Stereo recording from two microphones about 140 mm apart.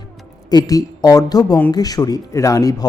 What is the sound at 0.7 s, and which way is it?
Speech, 25° left (ahead or behind).